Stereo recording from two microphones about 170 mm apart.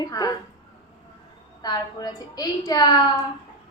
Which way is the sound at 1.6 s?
25° left (ahead or behind).